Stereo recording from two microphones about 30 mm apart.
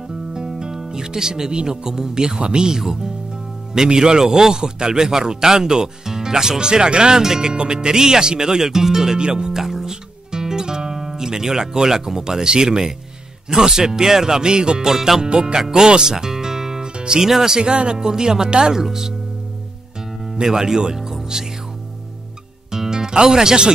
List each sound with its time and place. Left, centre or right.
0.3 s music: right
1.9 s a man's voice: right
2.7 s a man's voice: centre
9.5 s music: centre
13.5 s a man's voice: centre
14.9 s speech: centre
15.2 s a man's voice: right
16.1 s music: centre
16.9 s music: right
17.2 s speech: centre
17.6 s speech: right
17.9 s a man's voice: right
20.4 s a man's voice: right
22.7 s music: centre